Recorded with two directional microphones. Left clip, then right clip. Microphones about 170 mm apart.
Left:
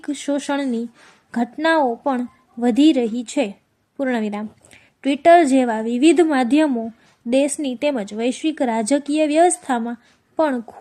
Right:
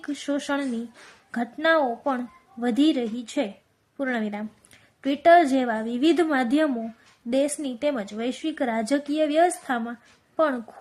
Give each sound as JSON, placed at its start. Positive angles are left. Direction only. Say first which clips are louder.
{"t": 0.0, "sound": "a woman's voice", "louder": "left 5 dB", "side_deg": 15}